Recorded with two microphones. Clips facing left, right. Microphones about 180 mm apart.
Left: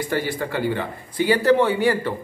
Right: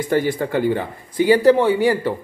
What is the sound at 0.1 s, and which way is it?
Speech, 45° right (ahead or behind).